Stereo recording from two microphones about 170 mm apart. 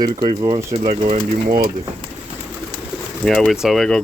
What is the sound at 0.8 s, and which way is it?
Speech, 45° right (ahead or behind).